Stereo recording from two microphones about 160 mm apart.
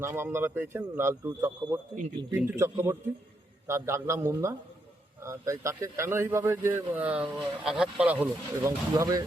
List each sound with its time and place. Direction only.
0.0 s a man's voice: 15° right (ahead or behind)